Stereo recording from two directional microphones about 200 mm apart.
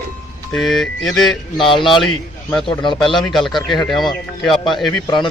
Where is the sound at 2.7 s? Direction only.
25° left (ahead or behind).